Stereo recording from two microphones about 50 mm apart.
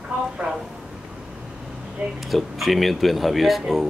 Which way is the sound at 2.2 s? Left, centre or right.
Centre.